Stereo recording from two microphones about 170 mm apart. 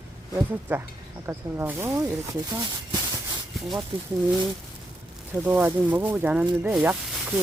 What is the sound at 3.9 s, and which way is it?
Speech, 30° right (ahead or behind).